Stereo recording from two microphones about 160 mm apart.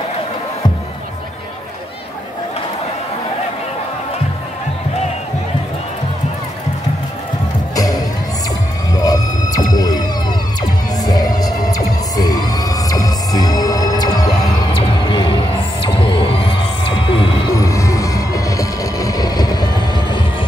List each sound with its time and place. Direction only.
7.7 s music: 20° left (ahead or behind)
8.9 s a sound: 25° left (ahead or behind)
9.7 s music: 25° left (ahead or behind)
17.6 s vehicle: 20° left (ahead or behind)